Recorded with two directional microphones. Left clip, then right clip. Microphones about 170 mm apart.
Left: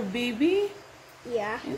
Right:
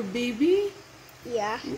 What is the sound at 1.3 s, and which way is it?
Speech, centre (ahead or behind).